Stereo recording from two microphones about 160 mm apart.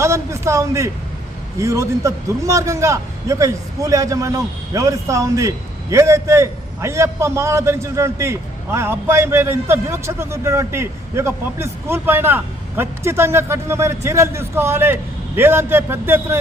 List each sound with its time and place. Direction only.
0.0 s a man's voice: 15° right (ahead or behind)